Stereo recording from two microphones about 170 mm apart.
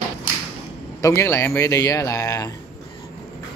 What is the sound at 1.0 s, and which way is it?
A man's voice, 15° left (ahead or behind).